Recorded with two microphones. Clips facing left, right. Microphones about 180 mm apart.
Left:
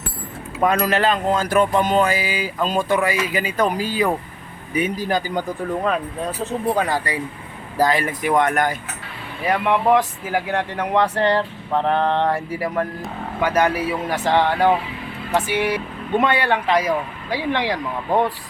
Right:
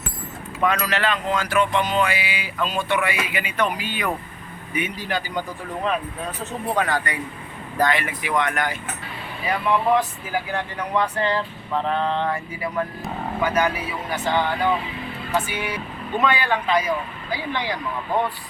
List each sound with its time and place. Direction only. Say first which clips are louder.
0.6 s speech: left 4 dB; 45° left (ahead or behind)
6.7 s speech: left 2 dB; 35° left (ahead or behind)
9.5 s speech: left 3 dB; 65° left (ahead or behind)
13.4 s speech: left 4 dB; 85° left
16.3 s speech: left 3 dB; 70° left (ahead or behind)